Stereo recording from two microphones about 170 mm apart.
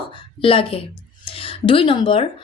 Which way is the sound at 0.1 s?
30° left (ahead or behind).